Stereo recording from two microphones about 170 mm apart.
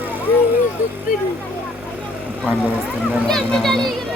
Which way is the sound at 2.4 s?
10° right (ahead or behind).